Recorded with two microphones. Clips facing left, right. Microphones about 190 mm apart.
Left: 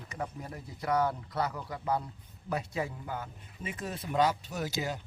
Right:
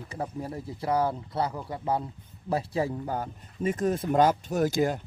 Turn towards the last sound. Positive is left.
turn(degrees=-50)  # may be behind; listen again after turning